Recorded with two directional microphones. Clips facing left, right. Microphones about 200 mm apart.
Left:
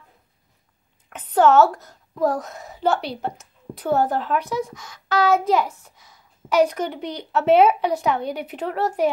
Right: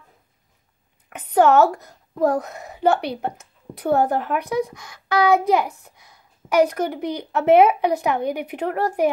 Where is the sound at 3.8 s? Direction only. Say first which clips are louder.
Right 2 dB; 10° right (ahead or behind).